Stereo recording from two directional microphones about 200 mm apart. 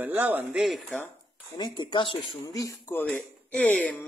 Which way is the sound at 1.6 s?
25° left (ahead or behind).